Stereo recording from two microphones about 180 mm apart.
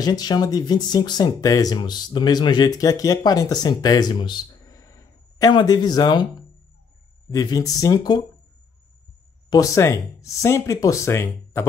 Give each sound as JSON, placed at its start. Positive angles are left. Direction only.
{"t": 0.0, "sound": "speech", "side_deg": 20}
{"t": 9.5, "sound": "speech", "side_deg": 20}